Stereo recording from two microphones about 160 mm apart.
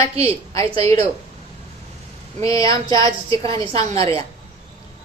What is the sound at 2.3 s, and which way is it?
Speech, 20° left (ahead or behind).